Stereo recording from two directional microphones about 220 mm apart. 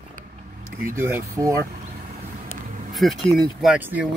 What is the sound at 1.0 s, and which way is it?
Speech, 10° right (ahead or behind).